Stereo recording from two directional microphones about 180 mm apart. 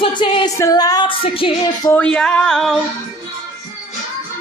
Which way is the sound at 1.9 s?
5° left (ahead or behind).